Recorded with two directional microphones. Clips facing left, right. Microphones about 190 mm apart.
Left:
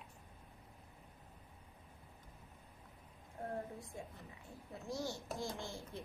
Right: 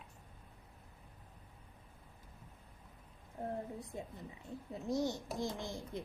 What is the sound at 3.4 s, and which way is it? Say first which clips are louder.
Speech: right 3 dB; 20° right (ahead or behind).